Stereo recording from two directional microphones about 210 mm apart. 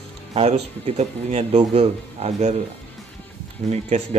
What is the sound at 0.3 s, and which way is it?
Speech, 30° right (ahead or behind).